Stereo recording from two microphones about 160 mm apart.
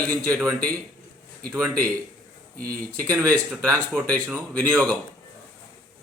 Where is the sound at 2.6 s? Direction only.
65° right (ahead or behind).